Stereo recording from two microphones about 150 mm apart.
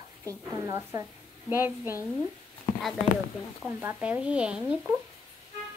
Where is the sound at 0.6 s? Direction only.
25° right (ahead or behind).